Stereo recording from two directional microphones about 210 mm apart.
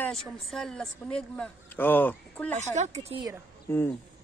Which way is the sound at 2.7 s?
35° right (ahead or behind).